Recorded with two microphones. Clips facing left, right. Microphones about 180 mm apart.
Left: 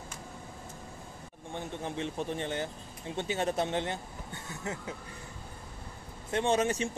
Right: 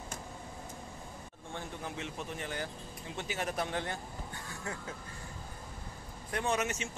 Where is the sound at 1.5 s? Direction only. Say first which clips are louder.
Left 4 dB; 20° left (ahead or behind).